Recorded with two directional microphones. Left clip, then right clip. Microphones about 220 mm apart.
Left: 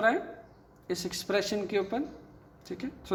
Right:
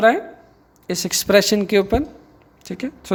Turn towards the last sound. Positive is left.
turn(degrees=-45)  # may be behind; listen again after turning